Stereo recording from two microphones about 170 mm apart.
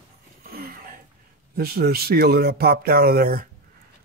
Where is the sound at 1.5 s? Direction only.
65° right (ahead or behind).